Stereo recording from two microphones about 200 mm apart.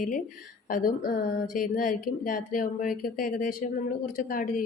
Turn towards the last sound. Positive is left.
turn(degrees=45)  # may be behind; listen again after turning